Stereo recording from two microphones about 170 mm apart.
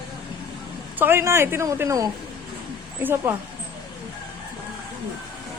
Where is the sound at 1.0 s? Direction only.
15° right (ahead or behind).